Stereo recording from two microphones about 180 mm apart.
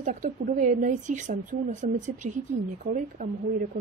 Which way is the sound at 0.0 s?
45° right (ahead or behind).